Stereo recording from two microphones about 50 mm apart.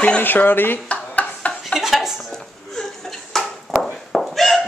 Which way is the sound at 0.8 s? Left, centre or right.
Left.